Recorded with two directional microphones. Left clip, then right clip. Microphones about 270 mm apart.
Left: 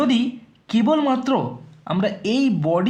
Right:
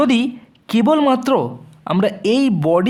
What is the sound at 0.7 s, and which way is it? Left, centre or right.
Speech, right.